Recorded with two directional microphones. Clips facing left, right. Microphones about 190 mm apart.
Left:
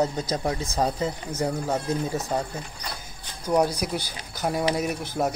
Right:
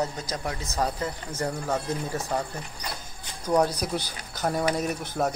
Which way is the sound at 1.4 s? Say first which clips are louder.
Left 2 dB; 10° left (ahead or behind).